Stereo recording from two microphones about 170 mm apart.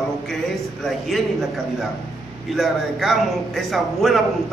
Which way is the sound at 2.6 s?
Centre (ahead or behind).